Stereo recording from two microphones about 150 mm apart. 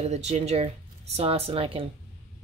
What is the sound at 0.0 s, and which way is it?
Speech, 45° right (ahead or behind).